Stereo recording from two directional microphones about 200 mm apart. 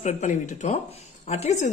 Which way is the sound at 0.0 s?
35° left (ahead or behind).